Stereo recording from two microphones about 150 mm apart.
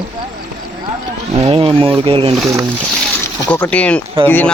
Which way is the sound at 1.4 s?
40° right (ahead or behind).